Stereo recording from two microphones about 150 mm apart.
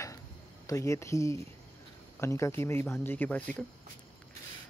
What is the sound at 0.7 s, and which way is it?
Speech, 20° left (ahead or behind).